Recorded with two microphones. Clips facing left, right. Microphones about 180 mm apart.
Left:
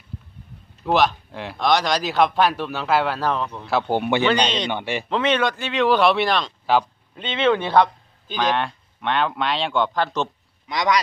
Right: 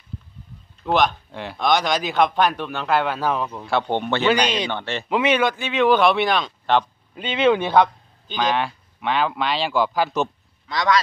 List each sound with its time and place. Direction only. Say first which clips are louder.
0.8 s a man's voice: left 1 dB; 5° left (ahead or behind)
4.3 s speech: right 1 dB; 10° right (ahead or behind)
4.6 s speech: left 2 dB; 10° left (ahead or behind)
5.1 s a man's voice: right 2 dB; 10° right (ahead or behind)
7.2 s a man's voice: right 2 dB; 10° right (ahead or behind)
10.7 s speech: even; 20° left (ahead or behind)